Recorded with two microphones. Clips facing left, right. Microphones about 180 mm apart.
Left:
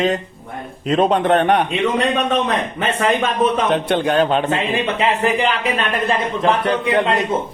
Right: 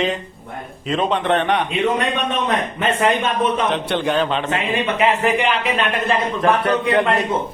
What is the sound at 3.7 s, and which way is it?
Speech, 45° left (ahead or behind).